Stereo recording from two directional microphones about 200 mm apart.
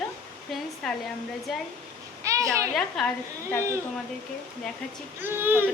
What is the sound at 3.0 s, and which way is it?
Speech, centre (ahead or behind).